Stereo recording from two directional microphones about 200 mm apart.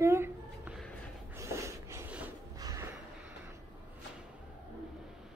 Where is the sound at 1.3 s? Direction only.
15° right (ahead or behind).